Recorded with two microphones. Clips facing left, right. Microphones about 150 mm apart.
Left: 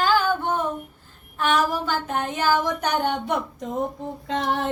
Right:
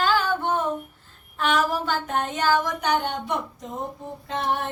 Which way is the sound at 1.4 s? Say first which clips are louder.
Left 1 dB; centre (ahead or behind).